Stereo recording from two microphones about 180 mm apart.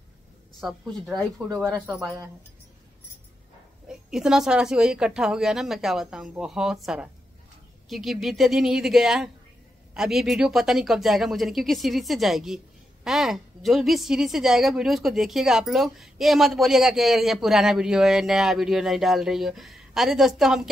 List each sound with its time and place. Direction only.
1.5 s speech: 15° right (ahead or behind)
3.9 s a woman's voice: 5° right (ahead or behind)